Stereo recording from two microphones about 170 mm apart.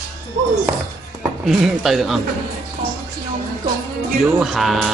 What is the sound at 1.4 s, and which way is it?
Mantra, 5° right (ahead or behind).